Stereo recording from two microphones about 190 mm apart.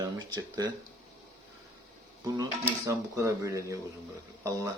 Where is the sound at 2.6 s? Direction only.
20° right (ahead or behind).